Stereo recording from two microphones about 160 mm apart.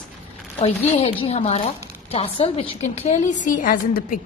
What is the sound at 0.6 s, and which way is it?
A woman's voice, 40° left (ahead or behind).